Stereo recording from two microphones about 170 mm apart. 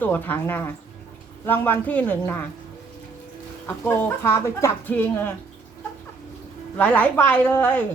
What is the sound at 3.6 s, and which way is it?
Speech, 15° left (ahead or behind).